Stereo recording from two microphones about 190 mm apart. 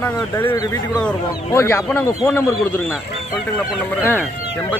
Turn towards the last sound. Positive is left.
turn(degrees=10)  # may be behind; listen again after turning